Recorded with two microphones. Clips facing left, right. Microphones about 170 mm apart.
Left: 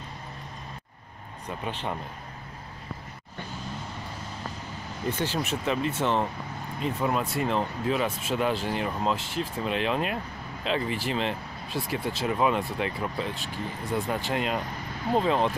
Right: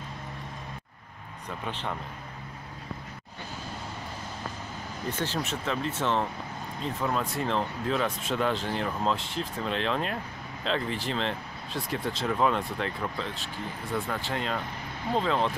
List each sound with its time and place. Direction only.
1.7 s speech: 10° left (ahead or behind)
5.2 s speech: 10° left (ahead or behind)